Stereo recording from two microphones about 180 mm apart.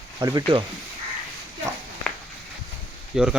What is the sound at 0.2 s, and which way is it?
Speech, 20° right (ahead or behind).